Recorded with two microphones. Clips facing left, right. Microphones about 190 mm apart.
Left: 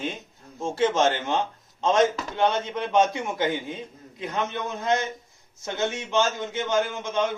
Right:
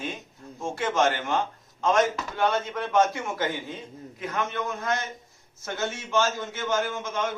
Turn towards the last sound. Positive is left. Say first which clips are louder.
# left 3 dB
turn(degrees=20)  # may be behind; listen again after turning